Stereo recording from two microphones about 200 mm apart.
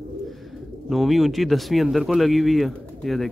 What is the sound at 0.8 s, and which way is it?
Speech, centre (ahead or behind).